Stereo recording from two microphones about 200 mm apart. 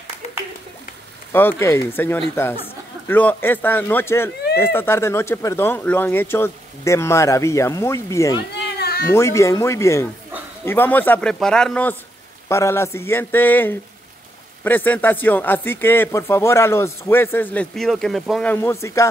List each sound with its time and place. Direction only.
1.6 s a man's voice: 10° left (ahead or behind)
8.5 s cat: 55° left (ahead or behind)
9.1 s a man's voice: 15° left (ahead or behind)